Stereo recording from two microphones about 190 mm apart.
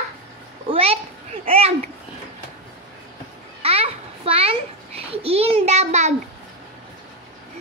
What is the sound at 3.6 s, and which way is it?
Babbling, 30° right (ahead or behind).